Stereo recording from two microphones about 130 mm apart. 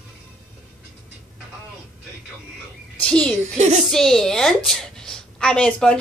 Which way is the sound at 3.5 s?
60° right (ahead or behind).